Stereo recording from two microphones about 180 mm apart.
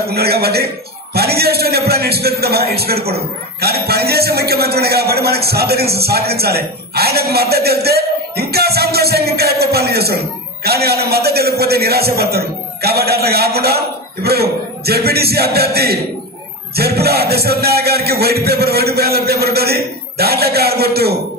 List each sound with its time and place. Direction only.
0.1 s a man's voice: 60° right (ahead or behind)